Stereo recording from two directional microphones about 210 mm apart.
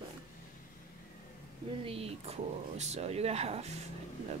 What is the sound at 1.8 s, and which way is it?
Speech, 30° right (ahead or behind).